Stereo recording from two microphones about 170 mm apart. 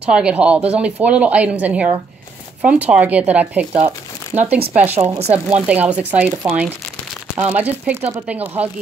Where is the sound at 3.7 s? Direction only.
35° right (ahead or behind).